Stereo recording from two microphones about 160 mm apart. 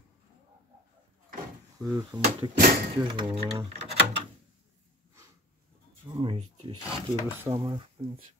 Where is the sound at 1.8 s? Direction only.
25° right (ahead or behind).